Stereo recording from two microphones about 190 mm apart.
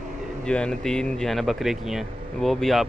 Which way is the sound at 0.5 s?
5° left (ahead or behind).